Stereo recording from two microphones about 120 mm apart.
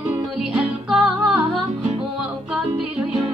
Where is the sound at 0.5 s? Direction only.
5° right (ahead or behind).